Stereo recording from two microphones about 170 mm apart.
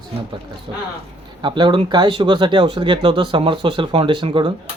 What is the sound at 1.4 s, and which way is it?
Speech, 25° right (ahead or behind).